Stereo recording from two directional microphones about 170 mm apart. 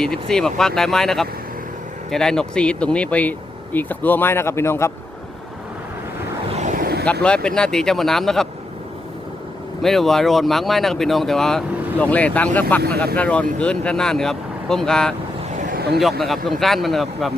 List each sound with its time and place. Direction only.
0.0 s speech: 5° left (ahead or behind)
6.6 s vehicle: 45° right (ahead or behind)
7.0 s speech: 5° left (ahead or behind)
9.8 s speech: centre (ahead or behind)